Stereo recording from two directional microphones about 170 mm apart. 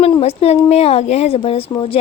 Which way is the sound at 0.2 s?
35° left (ahead or behind).